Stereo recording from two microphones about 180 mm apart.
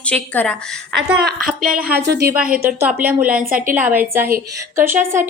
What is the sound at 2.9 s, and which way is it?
Speech, 10° right (ahead or behind).